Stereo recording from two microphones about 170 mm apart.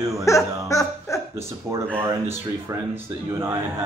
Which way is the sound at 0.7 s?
20° left (ahead or behind).